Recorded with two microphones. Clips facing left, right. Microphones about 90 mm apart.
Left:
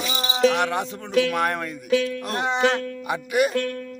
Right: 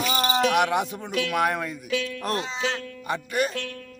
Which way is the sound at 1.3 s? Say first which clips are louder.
Even; 5° right (ahead or behind).